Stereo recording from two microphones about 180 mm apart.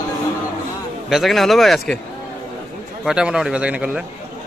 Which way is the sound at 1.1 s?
Centre (ahead or behind).